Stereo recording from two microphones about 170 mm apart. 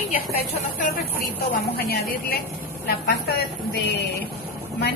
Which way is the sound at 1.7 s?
65° left (ahead or behind).